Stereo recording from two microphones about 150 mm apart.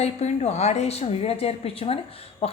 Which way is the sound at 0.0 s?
45° left (ahead or behind).